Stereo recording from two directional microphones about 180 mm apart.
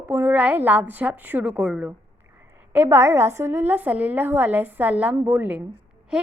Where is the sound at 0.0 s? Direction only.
10° right (ahead or behind).